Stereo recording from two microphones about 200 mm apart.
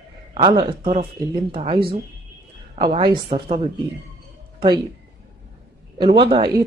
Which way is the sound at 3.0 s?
25° right (ahead or behind).